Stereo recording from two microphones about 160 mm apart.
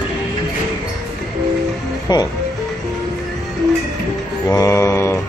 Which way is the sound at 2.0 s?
25° left (ahead or behind).